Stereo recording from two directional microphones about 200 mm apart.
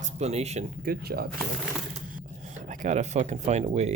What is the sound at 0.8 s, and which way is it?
Speech, 50° right (ahead or behind).